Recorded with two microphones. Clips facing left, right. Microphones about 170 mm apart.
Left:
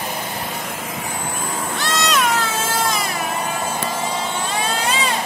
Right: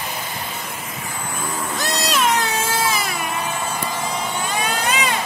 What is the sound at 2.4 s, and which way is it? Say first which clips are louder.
Cat: even; 10° right (ahead or behind).